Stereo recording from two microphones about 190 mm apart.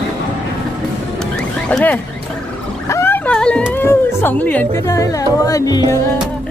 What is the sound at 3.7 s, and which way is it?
Speech, 10° left (ahead or behind).